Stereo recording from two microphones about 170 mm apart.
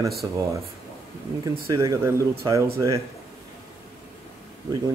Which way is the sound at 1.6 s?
20° right (ahead or behind).